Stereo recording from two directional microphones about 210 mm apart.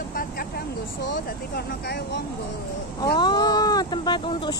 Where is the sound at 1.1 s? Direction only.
50° left (ahead or behind).